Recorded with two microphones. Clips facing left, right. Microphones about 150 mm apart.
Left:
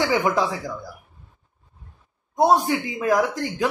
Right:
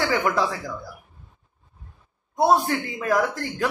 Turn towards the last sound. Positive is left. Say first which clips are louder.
# left 2 dB
turn(degrees=15)  # may be behind; listen again after turning